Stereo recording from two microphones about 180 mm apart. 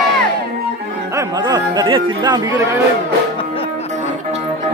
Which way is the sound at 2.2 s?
25° right (ahead or behind).